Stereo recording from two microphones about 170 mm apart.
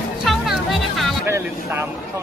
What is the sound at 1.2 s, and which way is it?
Speech, 15° right (ahead or behind).